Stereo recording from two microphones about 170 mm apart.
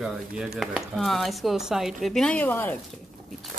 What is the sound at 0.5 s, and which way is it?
Speech, centre (ahead or behind).